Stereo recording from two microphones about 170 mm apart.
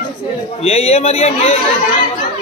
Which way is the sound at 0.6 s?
40° left (ahead or behind).